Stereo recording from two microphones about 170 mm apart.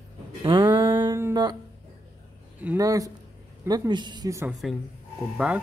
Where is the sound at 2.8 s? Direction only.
20° right (ahead or behind).